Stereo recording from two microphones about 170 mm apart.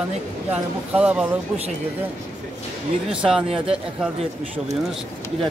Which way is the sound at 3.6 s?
5° right (ahead or behind).